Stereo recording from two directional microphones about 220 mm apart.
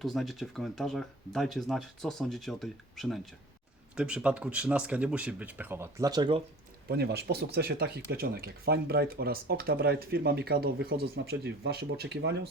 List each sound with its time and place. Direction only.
0.0 s speech: centre (ahead or behind); by 6.4 s 20° right (ahead or behind)
6.8 s speech: 45° right (ahead or behind)